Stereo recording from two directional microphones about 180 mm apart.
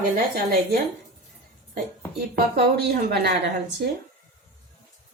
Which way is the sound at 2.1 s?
60° right (ahead or behind).